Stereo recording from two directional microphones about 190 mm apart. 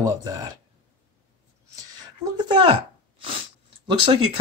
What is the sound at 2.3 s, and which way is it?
Speech, 25° right (ahead or behind).